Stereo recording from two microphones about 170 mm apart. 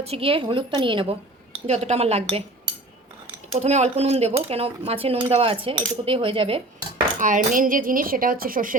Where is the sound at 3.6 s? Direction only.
40° right (ahead or behind).